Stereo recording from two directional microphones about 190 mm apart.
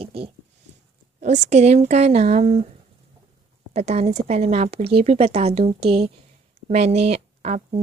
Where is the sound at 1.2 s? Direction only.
35° right (ahead or behind).